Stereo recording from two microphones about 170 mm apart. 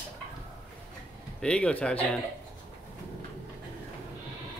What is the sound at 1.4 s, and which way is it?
Speech, 5° left (ahead or behind).